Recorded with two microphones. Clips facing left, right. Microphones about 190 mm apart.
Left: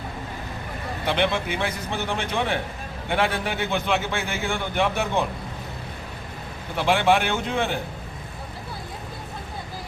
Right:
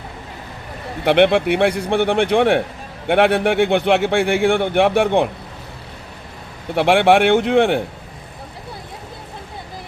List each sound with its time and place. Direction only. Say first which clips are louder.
1.0 s speech: right 11 dB; 70° right (ahead or behind)
6.7 s speech: right 7 dB; 70° right (ahead or behind)